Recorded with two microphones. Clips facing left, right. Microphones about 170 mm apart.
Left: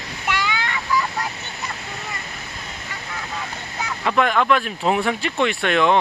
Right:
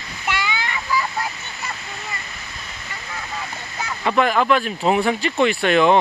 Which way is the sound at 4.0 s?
5° right (ahead or behind).